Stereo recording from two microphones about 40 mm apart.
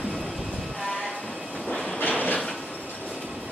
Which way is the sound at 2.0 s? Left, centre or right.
Left.